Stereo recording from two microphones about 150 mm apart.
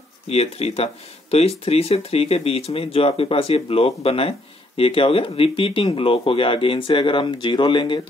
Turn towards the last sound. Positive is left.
turn(degrees=30)  # may be behind; listen again after turning